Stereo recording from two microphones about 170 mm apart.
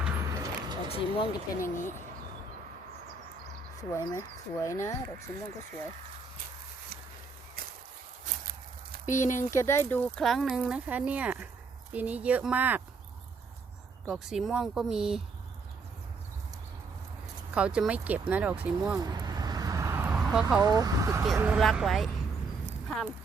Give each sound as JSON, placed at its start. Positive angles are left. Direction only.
{"t": 0.3, "sound": "a sound", "side_deg": -20}
{"t": 0.9, "sound": "speech", "side_deg": 35}
{"t": 1.3, "sound": "speech", "side_deg": 50}
{"t": 3.8, "sound": "speech", "side_deg": 20}
{"t": 9.0, "sound": "speech", "side_deg": 45}
{"t": 9.5, "sound": "speech", "side_deg": 15}
{"t": 14.1, "sound": "speech", "side_deg": 0}
{"t": 17.5, "sound": "speech", "side_deg": -5}
{"t": 18.9, "sound": "vehicle", "side_deg": -20}
{"t": 20.6, "sound": "speech", "side_deg": -20}
{"t": 21.3, "sound": "speech", "side_deg": -10}